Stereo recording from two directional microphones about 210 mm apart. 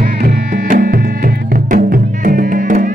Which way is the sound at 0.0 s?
40° right (ahead or behind).